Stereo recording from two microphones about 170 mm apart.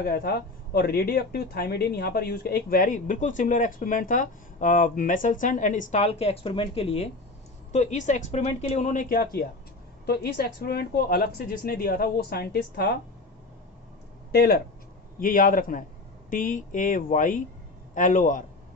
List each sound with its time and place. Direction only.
0.0 s speech: 65° left (ahead or behind); by 9.0 s 40° left (ahead or behind)
9.1 s speech: 60° left (ahead or behind)
14.3 s speech: 65° left (ahead or behind)
15.1 s speech: 50° left (ahead or behind)